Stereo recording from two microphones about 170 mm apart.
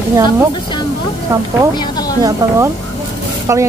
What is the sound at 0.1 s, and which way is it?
Speech, 20° right (ahead or behind).